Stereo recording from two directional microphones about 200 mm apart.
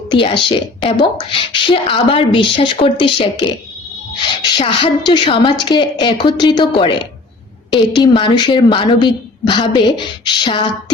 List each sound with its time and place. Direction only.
0.1 s a woman's voice: 25° left (ahead or behind)
4.5 s a woman's voice: 25° left (ahead or behind)